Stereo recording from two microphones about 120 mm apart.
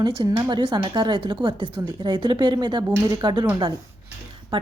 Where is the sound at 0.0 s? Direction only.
35° right (ahead or behind).